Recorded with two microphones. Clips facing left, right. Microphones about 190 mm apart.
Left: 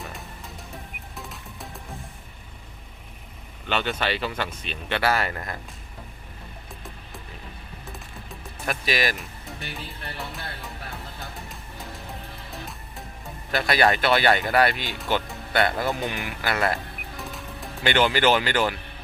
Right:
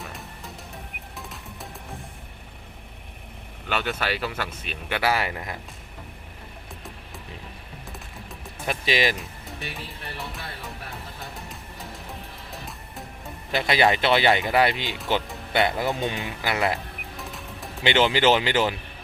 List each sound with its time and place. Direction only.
1.1 s music: centre (ahead or behind)
3.7 s speech: 5° right (ahead or behind)
8.6 s speech: 20° right (ahead or behind)
10.2 s speech: centre (ahead or behind)
12.5 s music: centre (ahead or behind)
13.5 s speech: 15° right (ahead or behind)
17.2 s music: centre (ahead or behind)
17.8 s speech: 20° right (ahead or behind)